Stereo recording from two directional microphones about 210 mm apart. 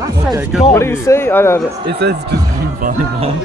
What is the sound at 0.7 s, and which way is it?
Speech, 10° left (ahead or behind).